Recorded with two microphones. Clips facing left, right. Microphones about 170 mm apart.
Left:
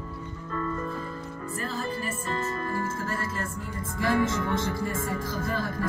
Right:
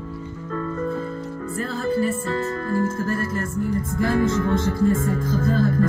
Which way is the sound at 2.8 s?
55° right (ahead or behind).